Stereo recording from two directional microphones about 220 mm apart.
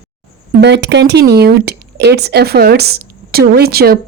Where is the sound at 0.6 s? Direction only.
50° right (ahead or behind).